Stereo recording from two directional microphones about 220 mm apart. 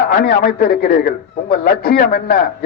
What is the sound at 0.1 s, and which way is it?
A man's voice, 40° left (ahead or behind).